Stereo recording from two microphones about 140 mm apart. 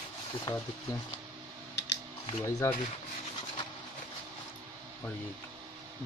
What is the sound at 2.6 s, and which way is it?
Speech, 20° left (ahead or behind).